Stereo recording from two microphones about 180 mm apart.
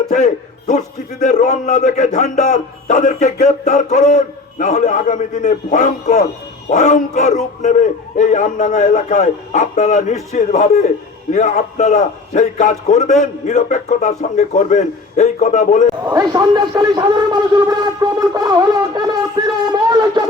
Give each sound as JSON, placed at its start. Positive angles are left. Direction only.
{"t": 0.1, "sound": "a man's voice", "side_deg": 40}
{"t": 16.1, "sound": "speech", "side_deg": -20}